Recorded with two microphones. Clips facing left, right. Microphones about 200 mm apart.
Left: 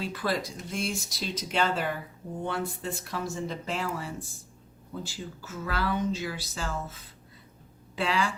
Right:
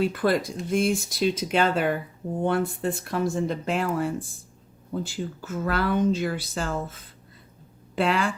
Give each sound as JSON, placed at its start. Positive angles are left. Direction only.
{"t": 0.0, "sound": "speech", "side_deg": -55}